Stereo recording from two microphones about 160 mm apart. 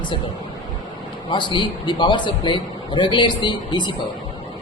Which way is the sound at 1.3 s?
30° left (ahead or behind).